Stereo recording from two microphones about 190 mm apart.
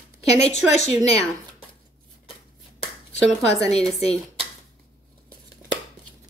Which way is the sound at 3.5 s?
35° left (ahead or behind).